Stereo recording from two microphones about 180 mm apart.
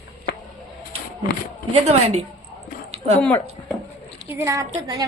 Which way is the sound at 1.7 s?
35° right (ahead or behind).